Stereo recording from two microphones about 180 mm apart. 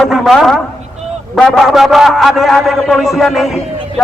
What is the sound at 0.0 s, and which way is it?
A man's voice, centre (ahead or behind).